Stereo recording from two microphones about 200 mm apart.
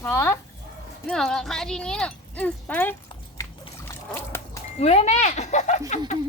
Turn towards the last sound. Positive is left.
turn(degrees=35)  # may be behind; listen again after turning